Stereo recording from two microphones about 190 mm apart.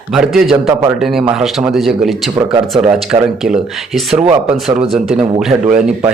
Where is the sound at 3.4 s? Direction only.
Centre (ahead or behind).